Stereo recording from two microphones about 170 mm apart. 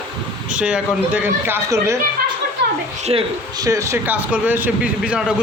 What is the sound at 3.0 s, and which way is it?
Speech, 40° right (ahead or behind).